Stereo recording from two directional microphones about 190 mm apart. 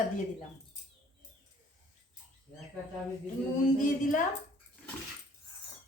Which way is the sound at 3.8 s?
45° left (ahead or behind).